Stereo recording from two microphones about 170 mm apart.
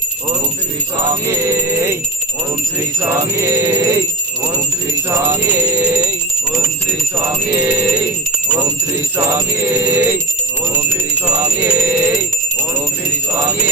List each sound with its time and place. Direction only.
1.0 s music: 20° right (ahead or behind)
3.0 s music: 15° right (ahead or behind)
5.2 s music: 15° right (ahead or behind)
7.2 s music: 20° right (ahead or behind)
9.1 s music: 15° right (ahead or behind)
11.6 s music: 15° right (ahead or behind)